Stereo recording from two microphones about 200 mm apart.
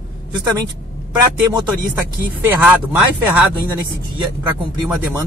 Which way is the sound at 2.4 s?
10° right (ahead or behind).